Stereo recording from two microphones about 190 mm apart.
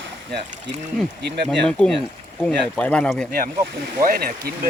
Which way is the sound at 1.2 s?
60° right (ahead or behind).